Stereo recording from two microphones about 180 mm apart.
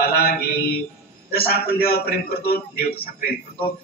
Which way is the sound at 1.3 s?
55° left (ahead or behind).